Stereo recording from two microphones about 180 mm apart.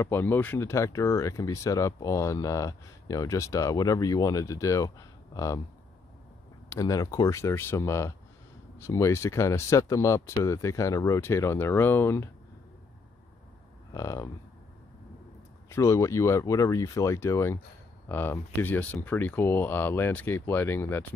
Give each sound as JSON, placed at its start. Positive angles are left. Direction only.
{"t": 0.0, "sound": "speech", "side_deg": 10}
{"t": 6.7, "sound": "speech", "side_deg": 20}
{"t": 13.9, "sound": "speech", "side_deg": 15}
{"t": 15.7, "sound": "speech", "side_deg": 15}